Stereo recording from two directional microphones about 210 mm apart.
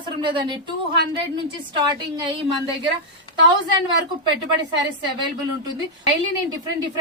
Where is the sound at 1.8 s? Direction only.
20° right (ahead or behind).